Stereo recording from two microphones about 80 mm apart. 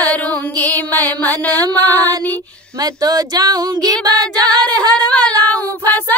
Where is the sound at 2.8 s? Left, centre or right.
Right.